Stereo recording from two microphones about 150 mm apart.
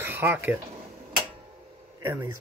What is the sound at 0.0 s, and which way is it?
Speech, 15° right (ahead or behind).